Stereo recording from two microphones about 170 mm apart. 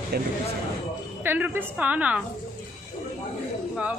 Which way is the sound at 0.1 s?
65° right (ahead or behind).